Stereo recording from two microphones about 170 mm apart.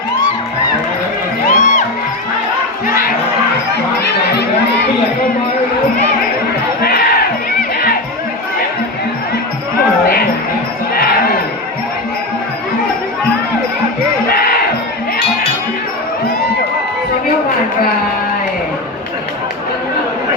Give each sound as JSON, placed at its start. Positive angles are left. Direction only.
{"t": 1.5, "sound": "music", "side_deg": 45}
{"t": 2.8, "sound": "crowd", "side_deg": 55}
{"t": 6.8, "sound": "crowd", "side_deg": 60}
{"t": 14.3, "sound": "a sound", "side_deg": 60}